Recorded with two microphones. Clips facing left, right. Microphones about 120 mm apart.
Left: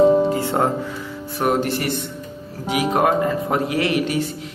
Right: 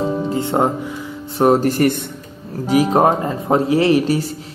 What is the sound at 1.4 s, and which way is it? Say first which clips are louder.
Speech: right 7 dB; 35° right (ahead or behind).